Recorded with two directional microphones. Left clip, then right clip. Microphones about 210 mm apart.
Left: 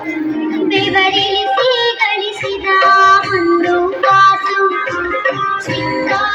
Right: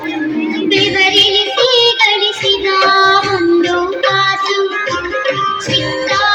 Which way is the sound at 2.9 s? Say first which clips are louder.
Left 2 dB; centre (ahead or behind).